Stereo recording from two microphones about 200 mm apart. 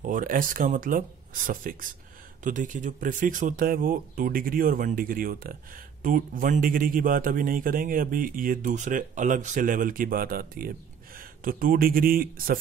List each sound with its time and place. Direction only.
0.0 s speech: 45° right (ahead or behind)